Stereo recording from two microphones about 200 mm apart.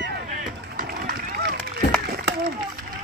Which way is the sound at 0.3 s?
45° right (ahead or behind).